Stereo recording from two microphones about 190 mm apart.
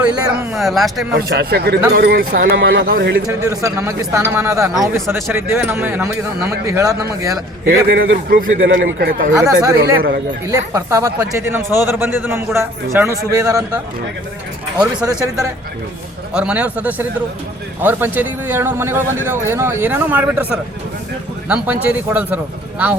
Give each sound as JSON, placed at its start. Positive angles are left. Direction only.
{"t": 0.5, "sound": "speech", "side_deg": 0}
{"t": 1.1, "sound": "speech", "side_deg": -55}
{"t": 2.8, "sound": "speech", "side_deg": -60}
{"t": 3.2, "sound": "speech", "side_deg": -15}
{"t": 7.7, "sound": "a man's voice", "side_deg": -50}
{"t": 8.8, "sound": "speech", "side_deg": -55}
{"t": 9.4, "sound": "speech", "side_deg": -20}
{"t": 14.8, "sound": "speech", "side_deg": -15}
{"t": 16.3, "sound": "speech", "side_deg": -5}